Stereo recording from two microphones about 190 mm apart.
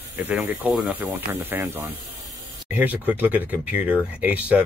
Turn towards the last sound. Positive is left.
turn(degrees=-5)  # may be behind; listen again after turning